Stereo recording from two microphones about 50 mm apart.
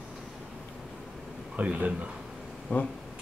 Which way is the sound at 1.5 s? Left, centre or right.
Right.